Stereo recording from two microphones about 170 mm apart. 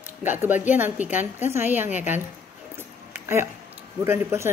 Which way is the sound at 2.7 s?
15° right (ahead or behind).